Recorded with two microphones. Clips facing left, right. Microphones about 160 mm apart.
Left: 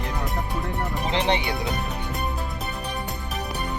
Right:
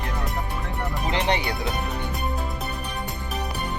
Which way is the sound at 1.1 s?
25° left (ahead or behind).